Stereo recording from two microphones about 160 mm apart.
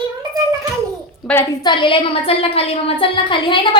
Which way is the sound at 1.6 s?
30° left (ahead or behind).